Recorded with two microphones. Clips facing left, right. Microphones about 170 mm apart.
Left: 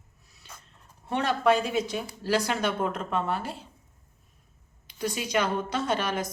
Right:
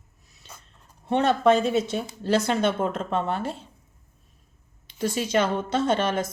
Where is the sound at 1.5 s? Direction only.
25° right (ahead or behind).